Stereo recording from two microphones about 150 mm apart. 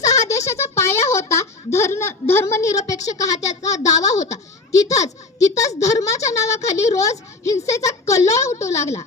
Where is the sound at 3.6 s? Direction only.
20° left (ahead or behind).